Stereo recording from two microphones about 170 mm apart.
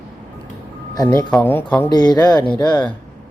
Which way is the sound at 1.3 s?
10° left (ahead or behind).